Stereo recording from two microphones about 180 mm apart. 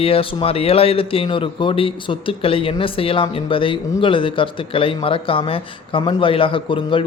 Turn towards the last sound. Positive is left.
turn(degrees=30)  # may be behind; listen again after turning